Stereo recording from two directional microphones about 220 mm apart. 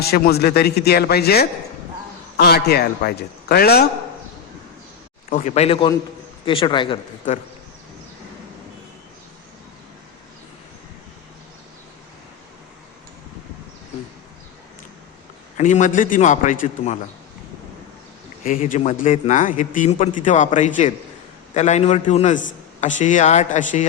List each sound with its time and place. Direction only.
0.1 s speech: 45° left (ahead or behind)
5.3 s a man's voice: 30° left (ahead or behind)
15.5 s a man's voice: 35° left (ahead or behind)
18.4 s a man's voice: 35° left (ahead or behind)